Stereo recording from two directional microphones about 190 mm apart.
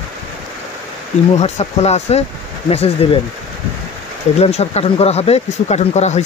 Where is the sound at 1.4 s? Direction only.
35° left (ahead or behind).